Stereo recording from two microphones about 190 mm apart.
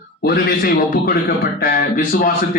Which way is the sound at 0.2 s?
55° left (ahead or behind).